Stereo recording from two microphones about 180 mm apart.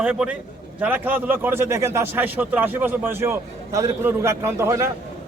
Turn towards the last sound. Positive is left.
turn(degrees=-15)  # may be behind; listen again after turning